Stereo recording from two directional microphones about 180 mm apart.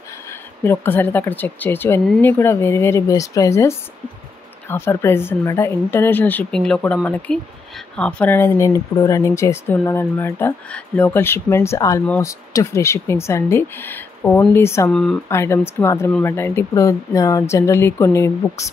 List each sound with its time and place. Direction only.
0.3 s speech: 10° left (ahead or behind)
14.9 s speech: 5° left (ahead or behind)
15.2 s speech: 15° left (ahead or behind)